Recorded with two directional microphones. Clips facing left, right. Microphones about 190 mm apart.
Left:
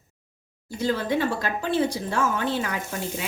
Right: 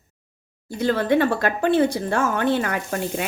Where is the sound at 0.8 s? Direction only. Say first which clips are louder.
Right 5 dB; 60° right (ahead or behind).